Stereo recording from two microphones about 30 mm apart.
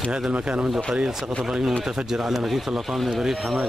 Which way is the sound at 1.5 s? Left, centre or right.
Right.